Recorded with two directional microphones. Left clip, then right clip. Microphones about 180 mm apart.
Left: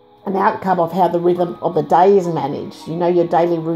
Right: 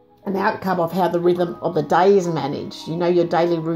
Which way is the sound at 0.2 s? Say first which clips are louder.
Left 5 dB; 5° right (ahead or behind).